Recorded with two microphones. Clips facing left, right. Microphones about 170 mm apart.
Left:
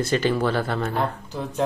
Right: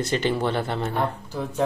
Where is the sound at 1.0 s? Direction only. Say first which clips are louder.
Even; 10° right (ahead or behind).